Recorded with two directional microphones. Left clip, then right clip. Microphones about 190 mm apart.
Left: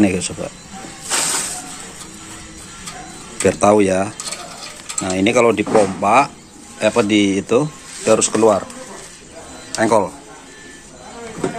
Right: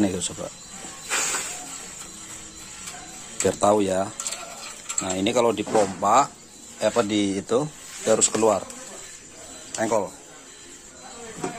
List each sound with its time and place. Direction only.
0.0 s speech: 15° right (ahead or behind)
3.4 s speech: 15° right (ahead or behind)
9.8 s speech: centre (ahead or behind)